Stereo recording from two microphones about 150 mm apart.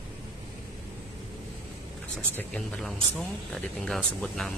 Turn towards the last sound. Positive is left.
turn(degrees=0)  # may be behind; listen again after turning